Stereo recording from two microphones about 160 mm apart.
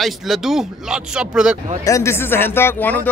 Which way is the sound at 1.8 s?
20° left (ahead or behind).